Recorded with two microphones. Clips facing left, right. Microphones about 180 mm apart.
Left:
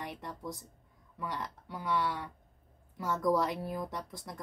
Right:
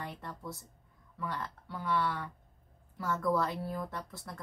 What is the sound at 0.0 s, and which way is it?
Speech, 15° left (ahead or behind).